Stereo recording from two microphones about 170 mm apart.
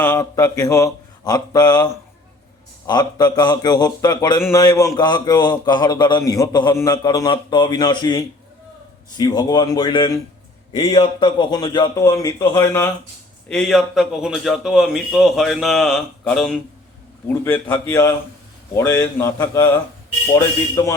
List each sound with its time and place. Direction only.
0.0 s a man's voice: 15° left (ahead or behind)
13.5 s a man's voice: centre (ahead or behind); by 20.9 s 20° left (ahead or behind)